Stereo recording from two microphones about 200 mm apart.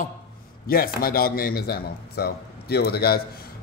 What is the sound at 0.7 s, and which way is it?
Speech, 50° left (ahead or behind).